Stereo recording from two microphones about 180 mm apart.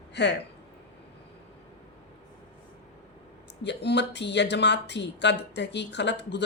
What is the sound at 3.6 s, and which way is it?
Speech, 70° left (ahead or behind).